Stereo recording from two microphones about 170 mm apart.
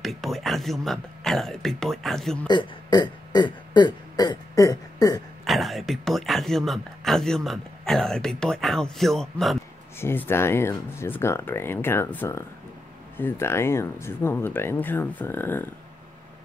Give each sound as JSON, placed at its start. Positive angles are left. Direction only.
{"t": 0.0, "sound": "speech", "side_deg": 0}
{"t": 2.4, "sound": "burping", "side_deg": 25}
{"t": 5.4, "sound": "speech", "side_deg": 0}
{"t": 9.9, "sound": "speech", "side_deg": 15}